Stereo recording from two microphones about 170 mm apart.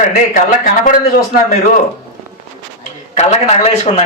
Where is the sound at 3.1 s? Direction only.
40° left (ahead or behind).